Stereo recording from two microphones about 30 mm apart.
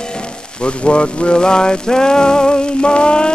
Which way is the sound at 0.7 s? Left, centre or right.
Left.